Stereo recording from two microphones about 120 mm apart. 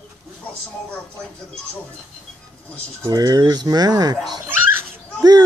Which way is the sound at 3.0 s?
35° right (ahead or behind).